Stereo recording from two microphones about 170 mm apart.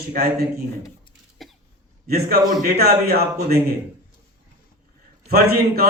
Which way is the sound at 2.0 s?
65° right (ahead or behind).